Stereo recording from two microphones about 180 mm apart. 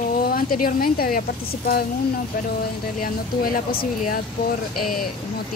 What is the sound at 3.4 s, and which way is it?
Speech, 55° left (ahead or behind).